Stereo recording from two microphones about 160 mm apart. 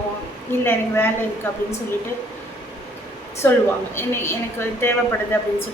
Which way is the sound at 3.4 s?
15° left (ahead or behind).